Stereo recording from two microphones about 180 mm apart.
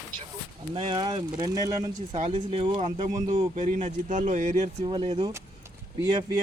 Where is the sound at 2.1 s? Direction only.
35° right (ahead or behind).